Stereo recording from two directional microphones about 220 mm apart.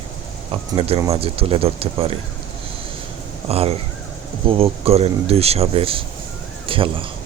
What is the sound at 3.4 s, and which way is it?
Speech, 25° right (ahead or behind).